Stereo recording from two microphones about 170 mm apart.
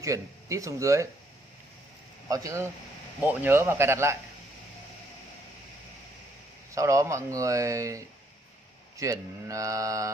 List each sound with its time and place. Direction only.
0.0 s speech: 20° right (ahead or behind)
2.2 s speech: 20° right (ahead or behind)
6.7 s speech: 20° right (ahead or behind)